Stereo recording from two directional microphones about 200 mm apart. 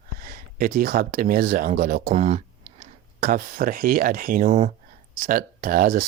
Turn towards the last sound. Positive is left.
turn(degrees=-45)  # may be behind; listen again after turning